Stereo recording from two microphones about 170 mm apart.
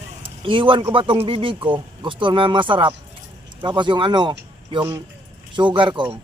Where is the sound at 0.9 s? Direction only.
30° right (ahead or behind).